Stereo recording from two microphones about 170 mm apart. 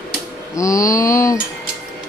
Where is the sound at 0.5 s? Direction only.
20° left (ahead or behind).